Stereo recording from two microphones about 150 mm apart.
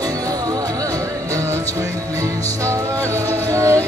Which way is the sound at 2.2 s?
20° right (ahead or behind).